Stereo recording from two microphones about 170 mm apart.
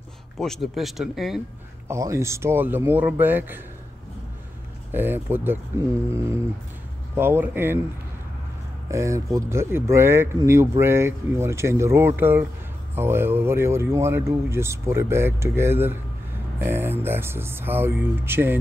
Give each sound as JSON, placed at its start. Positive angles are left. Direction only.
{"t": 0.4, "sound": "speech", "side_deg": 0}
{"t": 1.9, "sound": "speech", "side_deg": -15}
{"t": 4.9, "sound": "speech", "side_deg": -10}
{"t": 8.9, "sound": "speech", "side_deg": -15}